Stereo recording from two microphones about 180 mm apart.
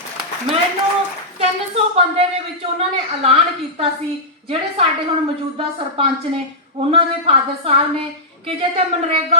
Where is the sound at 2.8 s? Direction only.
35° right (ahead or behind).